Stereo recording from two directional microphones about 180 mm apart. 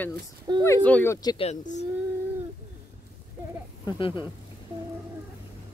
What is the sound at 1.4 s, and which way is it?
Speech, 40° left (ahead or behind).